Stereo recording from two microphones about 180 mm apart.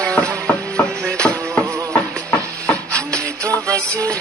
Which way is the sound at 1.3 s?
15° right (ahead or behind).